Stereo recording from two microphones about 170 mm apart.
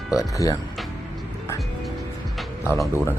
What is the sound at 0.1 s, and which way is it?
Speech, 20° left (ahead or behind).